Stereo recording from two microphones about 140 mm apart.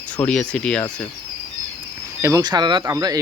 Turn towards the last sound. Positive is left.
turn(degrees=-25)  # may be behind; listen again after turning